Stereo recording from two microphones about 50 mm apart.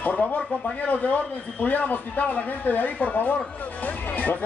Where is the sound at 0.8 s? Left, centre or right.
Left.